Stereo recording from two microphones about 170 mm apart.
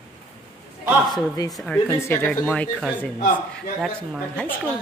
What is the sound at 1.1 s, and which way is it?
Speech, 20° left (ahead or behind).